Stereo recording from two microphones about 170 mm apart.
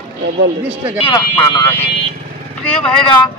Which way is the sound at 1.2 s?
20° left (ahead or behind).